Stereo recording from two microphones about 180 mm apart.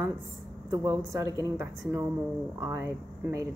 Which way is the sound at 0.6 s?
15° right (ahead or behind).